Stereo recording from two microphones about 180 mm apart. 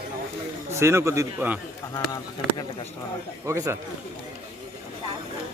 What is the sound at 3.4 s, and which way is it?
Speech, 15° right (ahead or behind).